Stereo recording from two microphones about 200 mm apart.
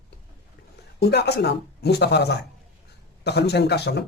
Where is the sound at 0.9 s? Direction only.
55° left (ahead or behind).